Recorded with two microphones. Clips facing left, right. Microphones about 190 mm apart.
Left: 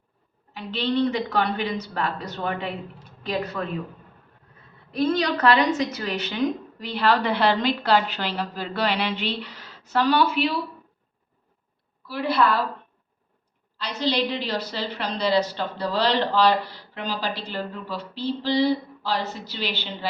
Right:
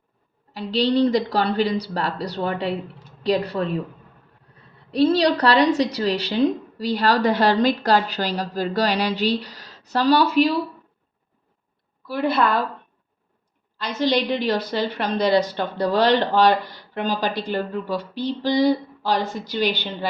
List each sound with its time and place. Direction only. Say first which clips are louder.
0.5 s speech: right 5 dB; 35° right (ahead or behind)
4.9 s speech: right 5 dB; 35° right (ahead or behind)
12.0 s a woman's voice: right 2 dB; 50° right (ahead or behind)
13.7 s a woman's voice: right 4 dB; 50° right (ahead or behind)